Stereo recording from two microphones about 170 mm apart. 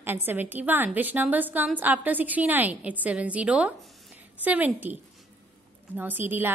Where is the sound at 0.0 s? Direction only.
10° right (ahead or behind).